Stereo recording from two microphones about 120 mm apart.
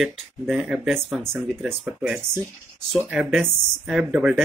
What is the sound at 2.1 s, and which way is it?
Speech, 20° right (ahead or behind).